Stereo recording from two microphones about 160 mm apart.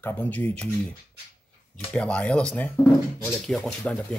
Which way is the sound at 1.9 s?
5° left (ahead or behind).